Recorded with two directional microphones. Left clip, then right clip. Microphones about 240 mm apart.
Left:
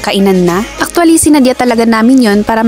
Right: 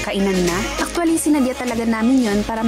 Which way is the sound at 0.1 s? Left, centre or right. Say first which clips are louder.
Left 11 dB; left.